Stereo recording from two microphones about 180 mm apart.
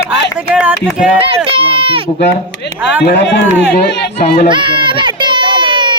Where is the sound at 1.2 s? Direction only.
30° right (ahead or behind).